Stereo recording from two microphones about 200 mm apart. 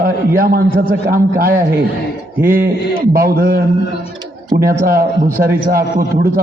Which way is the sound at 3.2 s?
45° right (ahead or behind).